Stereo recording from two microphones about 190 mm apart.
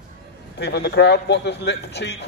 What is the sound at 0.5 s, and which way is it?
A man's voice, 60° left (ahead or behind).